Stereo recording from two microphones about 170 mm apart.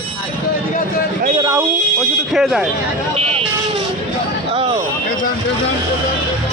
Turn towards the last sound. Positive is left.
turn(degrees=-30)  # may be behind; listen again after turning